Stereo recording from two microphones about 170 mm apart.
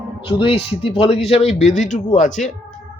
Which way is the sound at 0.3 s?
35° left (ahead or behind).